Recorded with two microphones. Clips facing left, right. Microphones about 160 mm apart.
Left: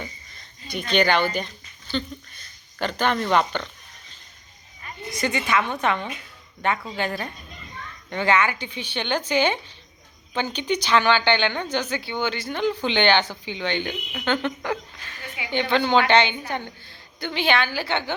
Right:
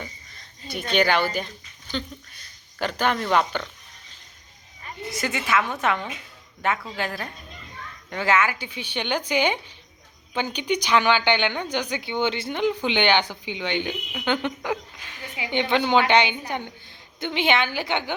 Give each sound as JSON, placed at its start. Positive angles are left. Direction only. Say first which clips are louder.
{"t": 0.7, "sound": "a woman's voice", "louder": "left 1 dB", "side_deg": -5}
{"t": 5.1, "sound": "a woman's voice", "louder": "left 1 dB", "side_deg": -5}